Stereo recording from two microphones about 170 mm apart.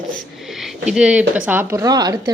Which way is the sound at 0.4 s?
Centre (ahead or behind).